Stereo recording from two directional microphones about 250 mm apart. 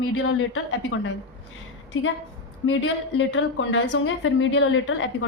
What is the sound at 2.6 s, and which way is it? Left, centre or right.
A woman's voice, left.